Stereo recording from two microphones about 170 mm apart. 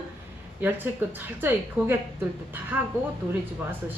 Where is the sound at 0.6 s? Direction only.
10° right (ahead or behind).